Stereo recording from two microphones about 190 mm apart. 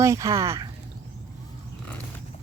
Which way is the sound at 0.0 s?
15° right (ahead or behind).